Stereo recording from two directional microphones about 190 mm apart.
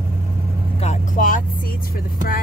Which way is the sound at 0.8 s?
40° left (ahead or behind).